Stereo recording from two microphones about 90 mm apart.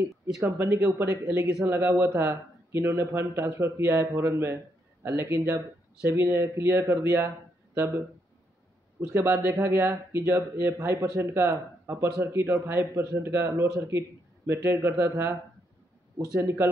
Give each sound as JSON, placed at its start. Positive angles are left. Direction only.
{"t": 0.4, "sound": "speech", "side_deg": -30}
{"t": 9.1, "sound": "speech", "side_deg": -25}